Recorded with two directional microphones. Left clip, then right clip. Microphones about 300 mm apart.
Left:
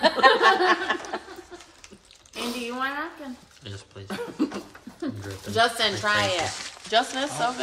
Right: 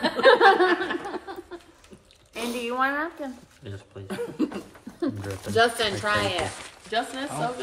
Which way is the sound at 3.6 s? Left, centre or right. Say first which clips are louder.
Even; centre.